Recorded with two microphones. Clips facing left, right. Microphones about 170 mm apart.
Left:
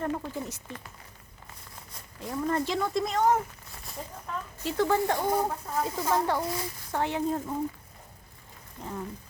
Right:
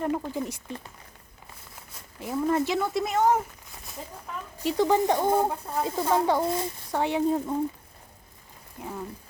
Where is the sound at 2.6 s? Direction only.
5° right (ahead or behind).